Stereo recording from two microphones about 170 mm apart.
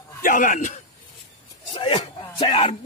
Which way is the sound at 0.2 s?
50° left (ahead or behind).